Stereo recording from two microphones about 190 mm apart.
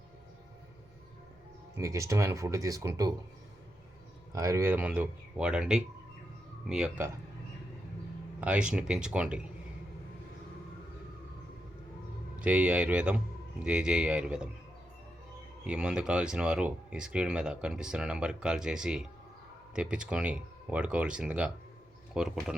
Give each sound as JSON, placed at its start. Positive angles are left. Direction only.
{"t": 1.7, "sound": "speech", "side_deg": -15}
{"t": 4.3, "sound": "speech", "side_deg": -20}
{"t": 8.4, "sound": "speech", "side_deg": -5}
{"t": 12.4, "sound": "speech", "side_deg": -5}
{"t": 15.6, "sound": "speech", "side_deg": -5}